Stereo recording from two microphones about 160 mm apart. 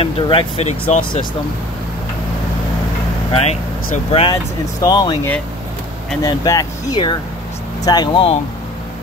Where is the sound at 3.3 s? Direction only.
40° left (ahead or behind).